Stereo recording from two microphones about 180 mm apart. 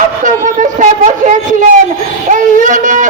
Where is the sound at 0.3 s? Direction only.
45° right (ahead or behind).